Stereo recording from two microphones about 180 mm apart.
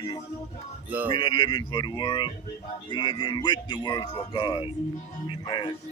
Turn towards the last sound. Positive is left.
turn(degrees=25)  # may be behind; listen again after turning